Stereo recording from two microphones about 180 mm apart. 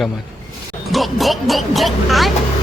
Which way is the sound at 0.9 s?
Centre (ahead or behind).